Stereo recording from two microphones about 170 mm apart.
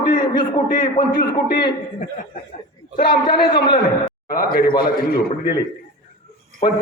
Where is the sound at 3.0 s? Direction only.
25° left (ahead or behind).